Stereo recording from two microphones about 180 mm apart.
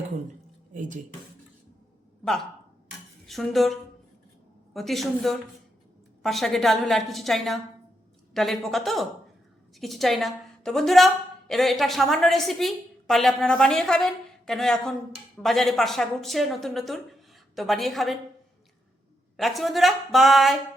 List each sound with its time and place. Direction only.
0.7 s speech: 45° right (ahead or behind)
2.2 s a woman's voice: centre (ahead or behind)
19.4 s a woman's voice: centre (ahead or behind)